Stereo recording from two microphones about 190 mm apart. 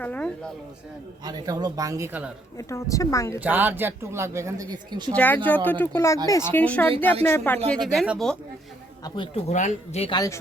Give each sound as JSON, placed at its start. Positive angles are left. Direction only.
{"t": 0.0, "sound": "speech", "side_deg": 5}
{"t": 1.2, "sound": "speech", "side_deg": -20}
{"t": 2.6, "sound": "speech", "side_deg": 15}
{"t": 3.4, "sound": "a man's voice", "side_deg": -10}
{"t": 5.1, "sound": "speech", "side_deg": 10}
{"t": 7.7, "sound": "speech", "side_deg": 0}
{"t": 9.0, "sound": "speech", "side_deg": 25}
{"t": 9.5, "sound": "speech", "side_deg": 40}